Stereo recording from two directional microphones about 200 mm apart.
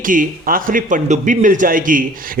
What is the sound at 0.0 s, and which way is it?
Speech, 45° right (ahead or behind).